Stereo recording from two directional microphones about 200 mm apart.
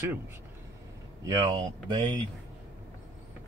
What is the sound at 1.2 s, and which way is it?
Speech, 20° right (ahead or behind).